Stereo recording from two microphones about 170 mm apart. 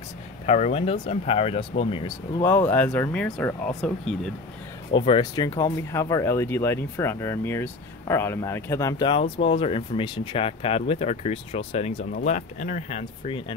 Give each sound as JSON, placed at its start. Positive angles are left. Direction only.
{"t": 0.5, "sound": "speech", "side_deg": 40}
{"t": 2.4, "sound": "speech", "side_deg": 10}
{"t": 4.9, "sound": "speech", "side_deg": 30}